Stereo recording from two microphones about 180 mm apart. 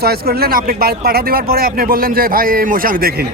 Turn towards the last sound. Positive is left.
turn(degrees=-55)  # may be behind; listen again after turning